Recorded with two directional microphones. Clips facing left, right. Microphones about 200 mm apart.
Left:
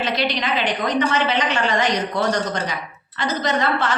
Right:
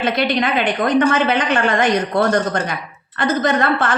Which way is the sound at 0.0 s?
55° right (ahead or behind).